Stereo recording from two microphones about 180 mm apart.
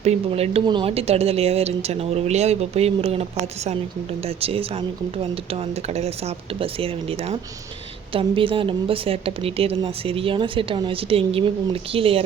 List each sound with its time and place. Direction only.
0.0 s a woman's voice: 35° right (ahead or behind)